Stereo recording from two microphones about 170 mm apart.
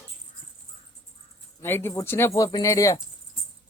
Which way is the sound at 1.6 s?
15° left (ahead or behind).